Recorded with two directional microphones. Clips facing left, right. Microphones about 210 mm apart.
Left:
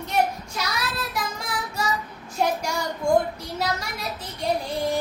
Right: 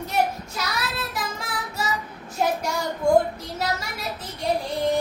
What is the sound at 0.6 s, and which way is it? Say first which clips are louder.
Child singing: even; centre (ahead or behind).